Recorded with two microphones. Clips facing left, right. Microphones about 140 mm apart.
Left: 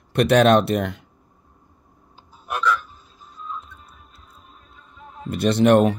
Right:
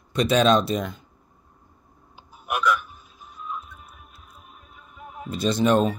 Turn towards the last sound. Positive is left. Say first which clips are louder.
# left 5 dB
turn(degrees=70)  # may be behind; listen again after turning